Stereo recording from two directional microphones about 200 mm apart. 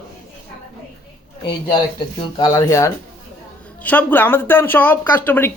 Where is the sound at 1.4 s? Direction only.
25° left (ahead or behind).